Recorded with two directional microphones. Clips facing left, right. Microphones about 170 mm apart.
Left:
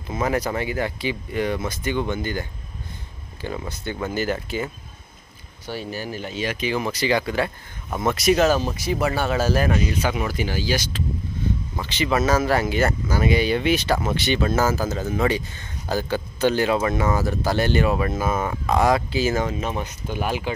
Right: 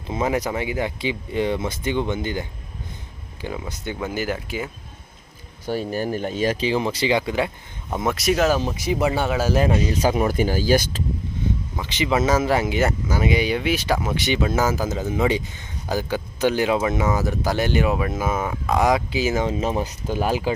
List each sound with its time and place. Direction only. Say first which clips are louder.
0.1 s speech: right 1 dB; 20° right (ahead or behind)
3.4 s speech: even; 15° right (ahead or behind)
5.7 s speech: right 6 dB; 45° right (ahead or behind)
6.5 s speech: right 3 dB; 30° right (ahead or behind)
8.0 s speech: left 2 dB; centre (ahead or behind)
8.6 s speech: right 2 dB; 15° right (ahead or behind)
9.6 s speech: right 2 dB; 25° right (ahead or behind)
9.9 s speech: right 5 dB; 40° right (ahead or behind)
11.8 s speech: right 1 dB; 20° right (ahead or behind)
18.8 s speech: even; 15° right (ahead or behind)
19.6 s speech: right 4 dB; 35° right (ahead or behind)